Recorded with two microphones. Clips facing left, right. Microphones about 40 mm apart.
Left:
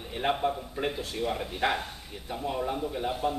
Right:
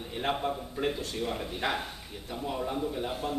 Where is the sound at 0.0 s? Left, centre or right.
Centre.